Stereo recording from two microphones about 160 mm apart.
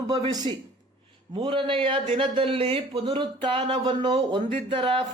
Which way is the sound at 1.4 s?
30° right (ahead or behind).